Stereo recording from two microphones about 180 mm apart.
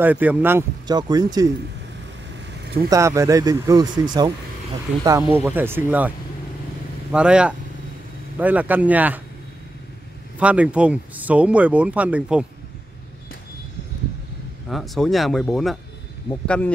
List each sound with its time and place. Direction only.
0.0 s speech: 10° right (ahead or behind)
0.8 s speech: 25° right (ahead or behind)
2.9 s speech: 15° right (ahead or behind)
10.4 s speech: 5° right (ahead or behind)
14.7 s speech: centre (ahead or behind)